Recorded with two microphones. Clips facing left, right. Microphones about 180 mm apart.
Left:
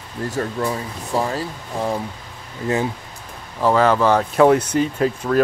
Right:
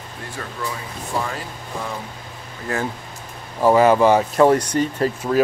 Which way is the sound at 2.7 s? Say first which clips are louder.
Left 4 dB; 20° left (ahead or behind).